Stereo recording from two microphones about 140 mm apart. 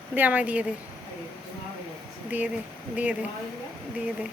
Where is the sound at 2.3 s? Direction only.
10° right (ahead or behind).